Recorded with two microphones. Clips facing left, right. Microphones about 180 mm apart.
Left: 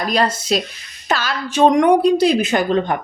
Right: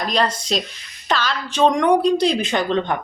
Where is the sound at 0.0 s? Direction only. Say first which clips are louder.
Left 2 dB; 5° left (ahead or behind).